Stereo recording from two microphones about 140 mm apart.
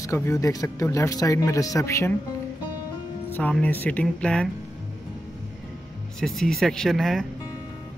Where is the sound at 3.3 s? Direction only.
10° left (ahead or behind).